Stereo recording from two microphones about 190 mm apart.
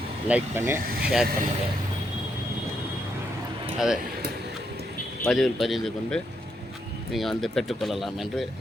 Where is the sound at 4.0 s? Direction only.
50° right (ahead or behind).